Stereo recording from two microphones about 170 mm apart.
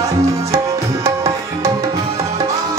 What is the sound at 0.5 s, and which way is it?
Tabla, 20° right (ahead or behind).